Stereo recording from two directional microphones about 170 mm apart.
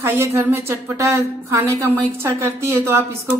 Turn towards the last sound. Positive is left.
turn(degrees=-15)  # may be behind; listen again after turning